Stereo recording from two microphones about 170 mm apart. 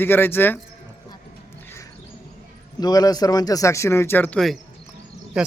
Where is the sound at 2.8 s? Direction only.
20° left (ahead or behind).